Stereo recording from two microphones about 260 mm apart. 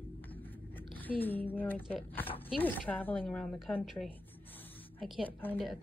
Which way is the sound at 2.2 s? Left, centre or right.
Left.